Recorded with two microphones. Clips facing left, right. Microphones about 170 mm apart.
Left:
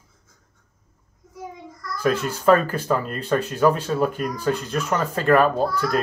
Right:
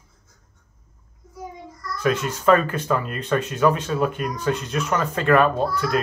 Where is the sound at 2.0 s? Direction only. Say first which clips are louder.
Left 1 dB; 35° left (ahead or behind).